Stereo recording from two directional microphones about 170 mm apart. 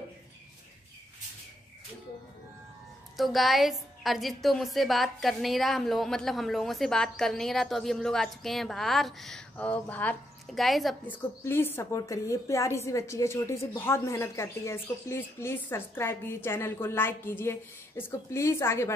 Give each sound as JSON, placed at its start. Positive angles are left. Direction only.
{"t": 3.2, "sound": "a woman's voice", "side_deg": 0}
{"t": 11.4, "sound": "a woman's voice", "side_deg": 15}